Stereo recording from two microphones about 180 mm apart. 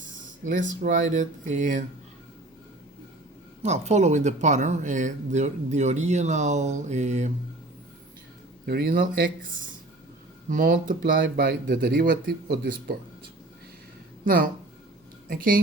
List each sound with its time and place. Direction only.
0.4 s speech: 45° right (ahead or behind)
3.6 s speech: 40° right (ahead or behind)
8.6 s speech: 55° right (ahead or behind)
10.5 s speech: 50° right (ahead or behind)
14.3 s speech: 50° right (ahead or behind)